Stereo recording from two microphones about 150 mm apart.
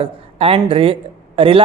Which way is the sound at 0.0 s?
40° right (ahead or behind).